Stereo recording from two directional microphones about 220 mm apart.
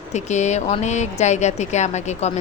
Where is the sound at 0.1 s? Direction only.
30° left (ahead or behind).